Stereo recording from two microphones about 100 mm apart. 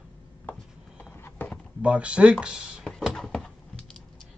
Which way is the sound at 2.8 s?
5° left (ahead or behind).